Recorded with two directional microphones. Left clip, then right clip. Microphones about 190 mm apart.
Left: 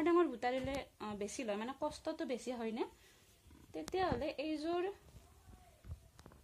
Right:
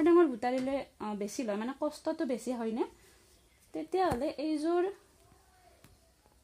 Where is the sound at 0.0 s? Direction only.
55° right (ahead or behind).